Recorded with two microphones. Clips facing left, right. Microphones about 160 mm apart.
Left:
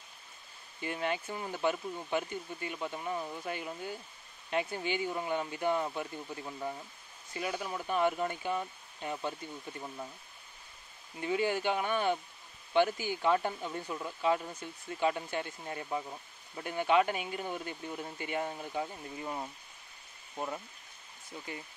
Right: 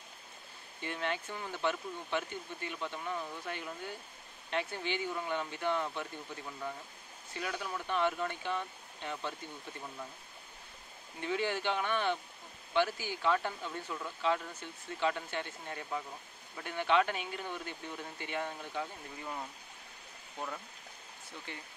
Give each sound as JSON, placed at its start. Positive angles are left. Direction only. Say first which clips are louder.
{"t": 0.8, "sound": "speech", "louder": "left 3 dB", "side_deg": 10}
{"t": 11.1, "sound": "speech", "louder": "left 3 dB", "side_deg": 10}